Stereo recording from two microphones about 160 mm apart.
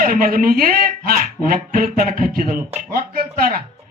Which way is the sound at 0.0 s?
60° right (ahead or behind).